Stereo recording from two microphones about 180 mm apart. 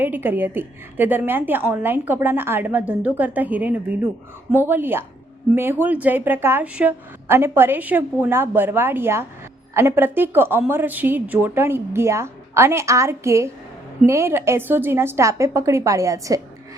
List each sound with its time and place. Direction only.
0.0 s a woman's voice: 10° right (ahead or behind)